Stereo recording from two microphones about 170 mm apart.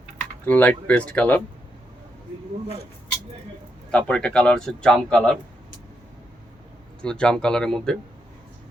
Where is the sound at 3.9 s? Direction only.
5° left (ahead or behind).